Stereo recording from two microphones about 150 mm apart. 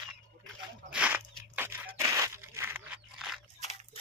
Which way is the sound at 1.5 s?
20° right (ahead or behind).